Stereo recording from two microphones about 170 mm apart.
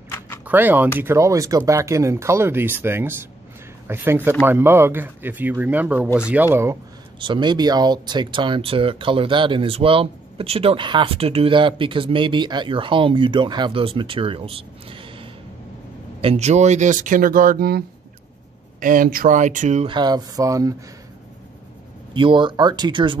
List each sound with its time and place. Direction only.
0.5 s speech: 10° right (ahead or behind)
7.2 s speech: 30° right (ahead or behind); by 19.9 s 45° right (ahead or behind)
19.9 s speech: 25° right (ahead or behind)
22.1 s speech: 30° right (ahead or behind)